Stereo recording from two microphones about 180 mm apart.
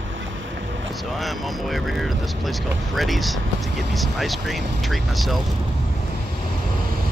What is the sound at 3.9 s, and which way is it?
Speech, centre (ahead or behind).